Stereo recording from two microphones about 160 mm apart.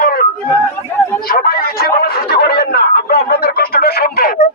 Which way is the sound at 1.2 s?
70° left (ahead or behind).